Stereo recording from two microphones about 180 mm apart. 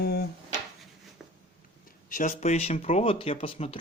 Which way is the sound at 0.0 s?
60° left (ahead or behind).